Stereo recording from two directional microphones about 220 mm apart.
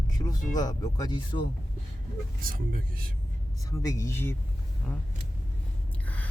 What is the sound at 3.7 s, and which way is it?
Speech, 15° left (ahead or behind).